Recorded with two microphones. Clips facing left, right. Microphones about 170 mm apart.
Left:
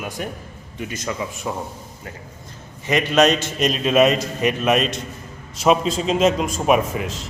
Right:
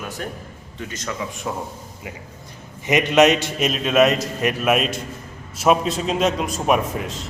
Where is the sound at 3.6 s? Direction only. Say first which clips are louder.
Left 2 dB; 5° right (ahead or behind).